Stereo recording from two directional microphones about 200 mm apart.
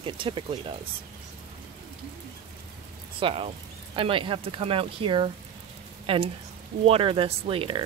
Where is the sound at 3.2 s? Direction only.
25° right (ahead or behind).